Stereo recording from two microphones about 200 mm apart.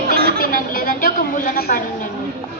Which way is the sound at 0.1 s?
50° right (ahead or behind).